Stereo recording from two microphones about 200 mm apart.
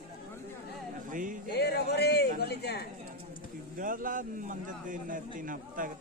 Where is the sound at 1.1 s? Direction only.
40° right (ahead or behind).